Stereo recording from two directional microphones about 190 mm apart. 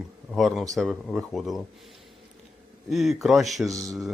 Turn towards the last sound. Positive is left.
turn(degrees=-15)  # may be behind; listen again after turning